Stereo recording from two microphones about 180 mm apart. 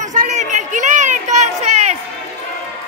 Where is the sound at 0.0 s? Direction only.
45° right (ahead or behind).